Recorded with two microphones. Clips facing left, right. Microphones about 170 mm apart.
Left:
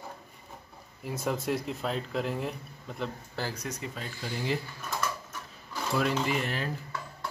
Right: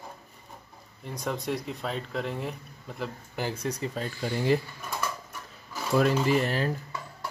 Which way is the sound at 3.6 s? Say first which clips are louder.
Right 6 dB; 35° right (ahead or behind).